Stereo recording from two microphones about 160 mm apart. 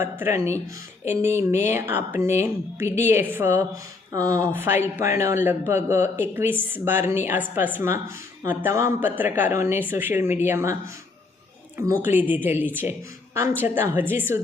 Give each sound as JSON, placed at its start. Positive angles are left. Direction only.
{"t": 0.0, "sound": "speech", "side_deg": -15}
{"t": 11.8, "sound": "speech", "side_deg": -15}